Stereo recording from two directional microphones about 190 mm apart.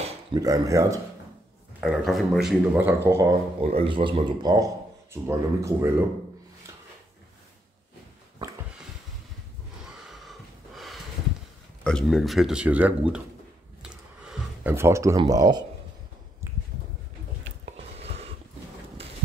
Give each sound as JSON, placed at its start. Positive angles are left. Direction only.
{"t": 0.0, "sound": "speech", "side_deg": -20}
{"t": 1.8, "sound": "speech", "side_deg": 0}
{"t": 3.6, "sound": "speech", "side_deg": -30}
{"t": 10.2, "sound": "snort", "side_deg": 0}
{"t": 11.8, "sound": "speech", "side_deg": 5}
{"t": 13.8, "sound": "a sound", "side_deg": -5}
{"t": 17.9, "sound": "a sound", "side_deg": -30}